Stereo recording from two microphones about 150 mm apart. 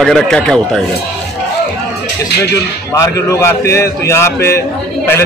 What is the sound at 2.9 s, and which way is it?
A man's voice, 20° left (ahead or behind).